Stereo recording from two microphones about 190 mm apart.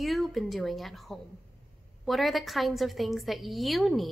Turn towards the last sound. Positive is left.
turn(degrees=0)  # may be behind; listen again after turning